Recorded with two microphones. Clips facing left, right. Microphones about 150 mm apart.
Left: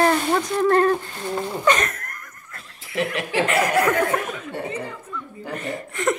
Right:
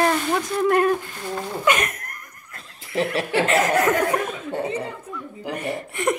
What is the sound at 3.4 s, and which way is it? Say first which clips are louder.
Speech: left 1 dB; 20° right (ahead or behind).